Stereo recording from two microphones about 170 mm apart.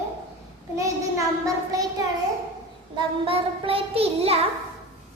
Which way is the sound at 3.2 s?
35° right (ahead or behind).